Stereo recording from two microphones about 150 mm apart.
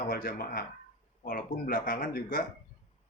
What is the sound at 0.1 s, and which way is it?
A man's voice, 75° left (ahead or behind).